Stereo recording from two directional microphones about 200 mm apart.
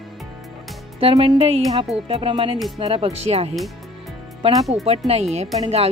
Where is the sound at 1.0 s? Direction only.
30° right (ahead or behind).